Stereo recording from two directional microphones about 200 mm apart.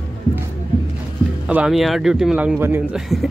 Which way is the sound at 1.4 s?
5° right (ahead or behind).